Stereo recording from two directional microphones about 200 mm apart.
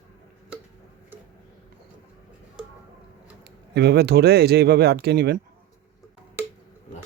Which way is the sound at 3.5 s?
55° right (ahead or behind).